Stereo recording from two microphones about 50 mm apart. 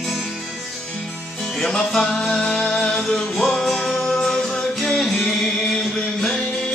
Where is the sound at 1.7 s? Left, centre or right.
Centre.